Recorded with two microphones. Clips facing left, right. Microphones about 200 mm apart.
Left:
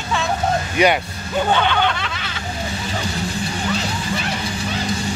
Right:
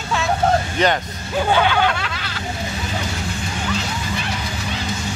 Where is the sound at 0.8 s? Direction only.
10° left (ahead or behind).